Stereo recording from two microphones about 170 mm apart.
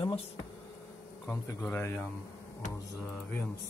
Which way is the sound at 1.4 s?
15° left (ahead or behind).